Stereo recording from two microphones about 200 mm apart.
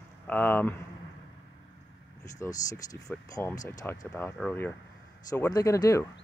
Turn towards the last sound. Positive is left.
turn(degrees=15)  # may be behind; listen again after turning